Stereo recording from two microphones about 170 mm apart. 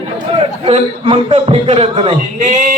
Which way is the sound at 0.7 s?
35° right (ahead or behind).